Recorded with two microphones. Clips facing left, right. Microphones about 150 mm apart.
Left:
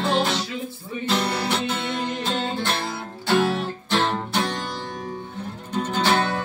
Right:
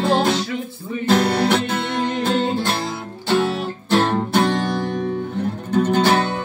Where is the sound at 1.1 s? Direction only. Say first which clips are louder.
Right 8 dB; 55° right (ahead or behind).